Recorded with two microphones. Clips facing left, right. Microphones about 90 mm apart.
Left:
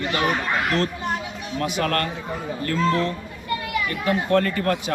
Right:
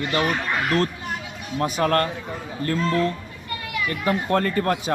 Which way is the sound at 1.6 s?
30° right (ahead or behind).